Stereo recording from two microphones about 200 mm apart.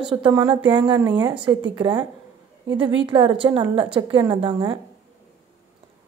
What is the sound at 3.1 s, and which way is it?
A woman's voice, 25° right (ahead or behind).